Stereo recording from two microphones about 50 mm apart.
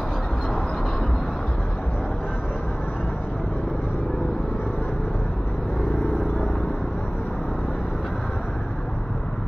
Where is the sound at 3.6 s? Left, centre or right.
Centre.